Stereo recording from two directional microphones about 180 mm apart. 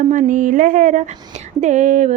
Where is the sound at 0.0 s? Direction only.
45° right (ahead or behind).